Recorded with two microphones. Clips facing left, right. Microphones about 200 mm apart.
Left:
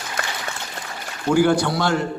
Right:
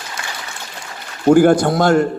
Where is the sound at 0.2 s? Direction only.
55° left (ahead or behind).